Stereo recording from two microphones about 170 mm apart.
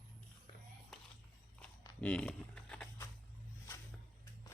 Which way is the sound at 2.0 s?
5° left (ahead or behind).